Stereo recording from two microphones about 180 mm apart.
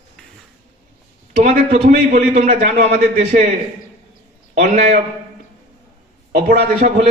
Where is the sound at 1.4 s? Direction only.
40° right (ahead or behind).